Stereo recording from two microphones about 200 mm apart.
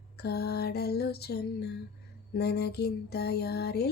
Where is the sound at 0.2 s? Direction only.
55° left (ahead or behind).